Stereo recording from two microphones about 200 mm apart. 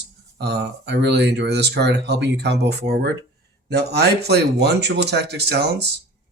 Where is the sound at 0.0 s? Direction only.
55° right (ahead or behind).